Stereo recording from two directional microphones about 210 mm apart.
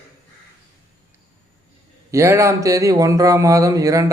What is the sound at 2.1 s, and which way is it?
Speech, 15° right (ahead or behind).